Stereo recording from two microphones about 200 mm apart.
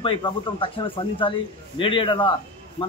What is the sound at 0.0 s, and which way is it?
Speech, 25° left (ahead or behind).